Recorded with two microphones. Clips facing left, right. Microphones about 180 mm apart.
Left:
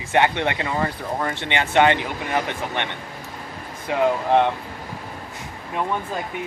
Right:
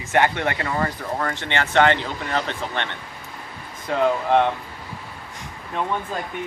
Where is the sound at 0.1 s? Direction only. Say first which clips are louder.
Left 1 dB; 20° left (ahead or behind).